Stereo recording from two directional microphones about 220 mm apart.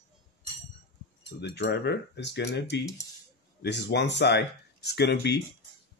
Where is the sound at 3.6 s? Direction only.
50° left (ahead or behind).